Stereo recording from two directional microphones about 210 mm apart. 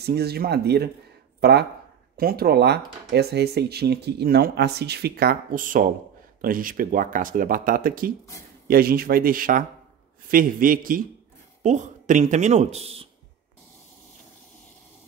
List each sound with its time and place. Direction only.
0.0 s speech: 50° right (ahead or behind); by 13.1 s 30° right (ahead or behind)